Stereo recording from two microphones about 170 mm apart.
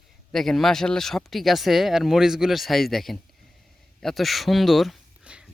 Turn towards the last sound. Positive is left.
turn(degrees=-5)  # may be behind; listen again after turning